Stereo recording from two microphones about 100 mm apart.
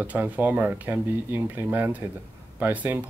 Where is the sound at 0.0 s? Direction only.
15° right (ahead or behind).